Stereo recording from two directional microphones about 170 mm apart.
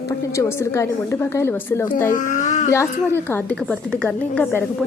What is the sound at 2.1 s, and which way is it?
Speech, 50° left (ahead or behind).